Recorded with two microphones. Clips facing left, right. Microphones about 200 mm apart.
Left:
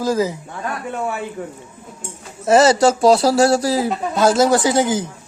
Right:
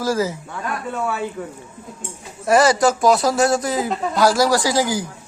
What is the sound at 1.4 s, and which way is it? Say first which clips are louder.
A man's voice: left 1 dB; 30° left (ahead or behind).